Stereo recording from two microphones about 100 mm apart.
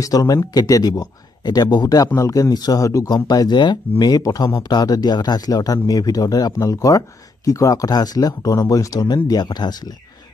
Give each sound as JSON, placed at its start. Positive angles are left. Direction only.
{"t": 0.0, "sound": "speech", "side_deg": 35}
{"t": 2.1, "sound": "speech", "side_deg": 30}